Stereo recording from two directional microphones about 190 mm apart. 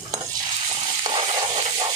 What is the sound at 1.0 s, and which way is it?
Frying, 25° right (ahead or behind).